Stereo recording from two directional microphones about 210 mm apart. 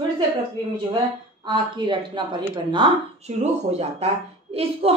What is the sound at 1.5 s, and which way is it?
A woman's voice, 20° right (ahead or behind).